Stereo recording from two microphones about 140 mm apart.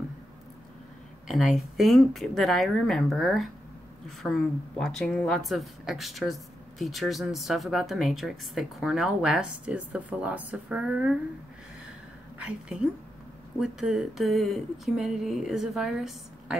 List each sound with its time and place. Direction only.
1.2 s a woman's voice: centre (ahead or behind)
12.4 s a woman's voice: 5° right (ahead or behind)